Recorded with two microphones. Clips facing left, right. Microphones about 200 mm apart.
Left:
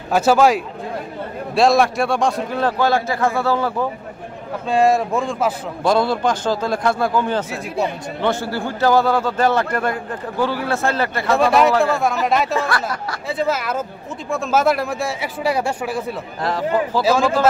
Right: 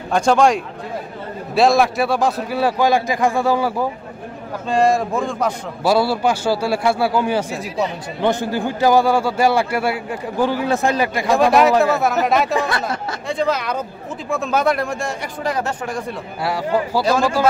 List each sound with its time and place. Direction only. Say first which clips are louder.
0.1 s a man's voice: left 1 dB; 5° left (ahead or behind); by 3.8 s 10° right (ahead or behind)
4.6 s a man's voice: left 1 dB; centre (ahead or behind); by 11.3 s 15° right (ahead or behind)
11.3 s a man's voice: right 1 dB; centre (ahead or behind)
12.5 s speech: right 1 dB; 20° right (ahead or behind)
13.3 s a man's voice: right 1 dB; 5° left (ahead or behind)
16.4 s a man's voice: even; 10° right (ahead or behind)
17.0 s a man's voice: left 2 dB; centre (ahead or behind)